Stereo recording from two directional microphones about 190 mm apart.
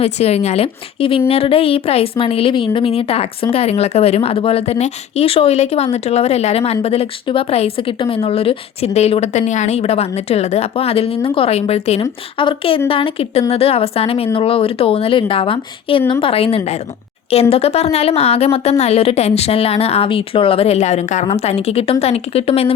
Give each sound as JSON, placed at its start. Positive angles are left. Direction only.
{"t": 0.0, "sound": "a woman's voice", "side_deg": 35}